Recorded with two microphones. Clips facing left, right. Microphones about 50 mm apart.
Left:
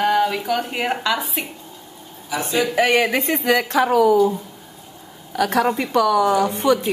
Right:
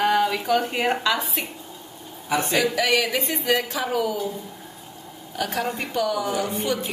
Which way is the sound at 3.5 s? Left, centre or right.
Left.